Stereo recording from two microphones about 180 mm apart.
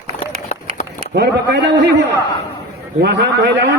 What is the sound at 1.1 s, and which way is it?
Speech, 65° right (ahead or behind).